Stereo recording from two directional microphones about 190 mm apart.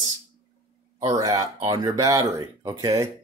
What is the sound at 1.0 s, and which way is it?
Speech, 20° right (ahead or behind).